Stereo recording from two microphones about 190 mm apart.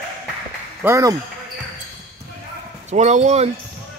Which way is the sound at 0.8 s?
15° right (ahead or behind).